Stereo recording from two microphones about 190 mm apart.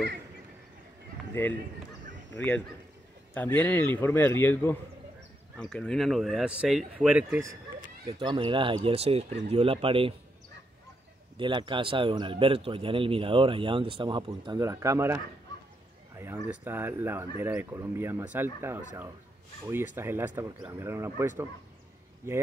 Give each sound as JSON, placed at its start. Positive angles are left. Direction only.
{"t": 1.4, "sound": "a man's voice", "side_deg": 10}
{"t": 8.1, "sound": "a man's voice", "side_deg": -25}
{"t": 11.3, "sound": "a man's voice", "side_deg": -25}